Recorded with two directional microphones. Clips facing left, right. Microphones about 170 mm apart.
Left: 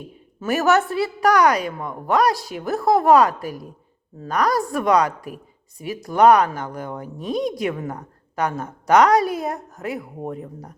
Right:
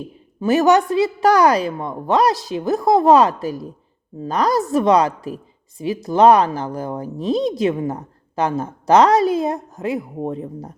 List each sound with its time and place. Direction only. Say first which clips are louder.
0.3 s speech: right 4 dB; 20° right (ahead or behind)